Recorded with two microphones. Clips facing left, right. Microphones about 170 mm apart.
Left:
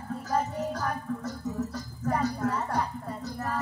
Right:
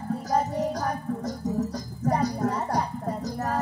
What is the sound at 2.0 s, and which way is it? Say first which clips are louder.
Music: right 3 dB; 40° right (ahead or behind).